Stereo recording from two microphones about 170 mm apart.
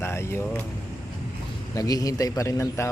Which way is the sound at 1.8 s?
20° left (ahead or behind).